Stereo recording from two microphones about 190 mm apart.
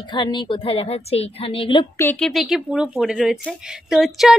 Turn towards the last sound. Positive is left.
turn(degrees=0)  # may be behind; listen again after turning